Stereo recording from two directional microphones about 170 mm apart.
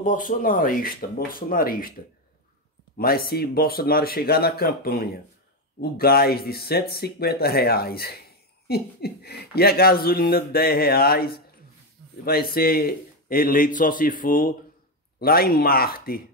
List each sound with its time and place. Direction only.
0.0 s speech: 50° left (ahead or behind)
3.0 s speech: 60° left (ahead or behind)